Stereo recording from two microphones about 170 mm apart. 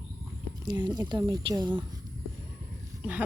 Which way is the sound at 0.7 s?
25° right (ahead or behind).